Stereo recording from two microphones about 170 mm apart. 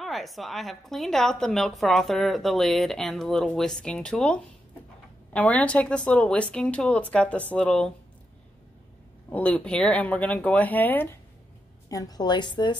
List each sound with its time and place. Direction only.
0.0 s a woman's voice: centre (ahead or behind)
9.3 s a woman's voice: 10° left (ahead or behind); by 12.7 s 25° left (ahead or behind)